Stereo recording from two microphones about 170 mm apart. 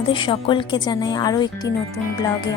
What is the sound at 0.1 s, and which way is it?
Speech, 30° left (ahead or behind).